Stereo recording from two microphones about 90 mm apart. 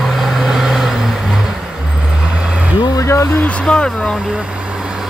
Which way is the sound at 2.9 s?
30° left (ahead or behind).